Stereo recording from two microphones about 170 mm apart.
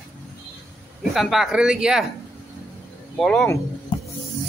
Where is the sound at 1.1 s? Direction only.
Centre (ahead or behind).